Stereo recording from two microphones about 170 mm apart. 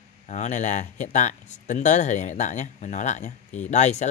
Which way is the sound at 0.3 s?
45° left (ahead or behind).